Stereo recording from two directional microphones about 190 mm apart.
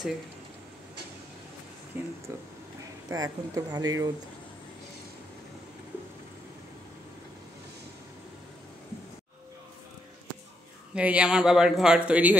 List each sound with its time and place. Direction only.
2.0 s speech: 10° right (ahead or behind)
11.0 s a man's voice: 5° right (ahead or behind)